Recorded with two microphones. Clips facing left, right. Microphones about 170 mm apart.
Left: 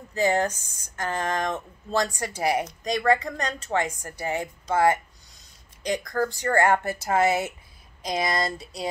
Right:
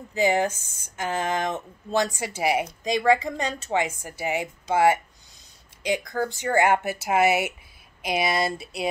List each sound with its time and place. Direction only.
0.1 s a woman's voice: 5° right (ahead or behind)
0.5 s speech: 25° right (ahead or behind)
0.8 s a woman's voice: 5° right (ahead or behind)